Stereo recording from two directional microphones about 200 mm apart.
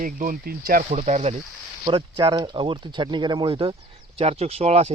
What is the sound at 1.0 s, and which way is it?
Speech, 35° right (ahead or behind).